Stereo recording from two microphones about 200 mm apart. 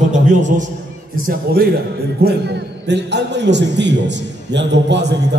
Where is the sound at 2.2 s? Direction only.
55° right (ahead or behind).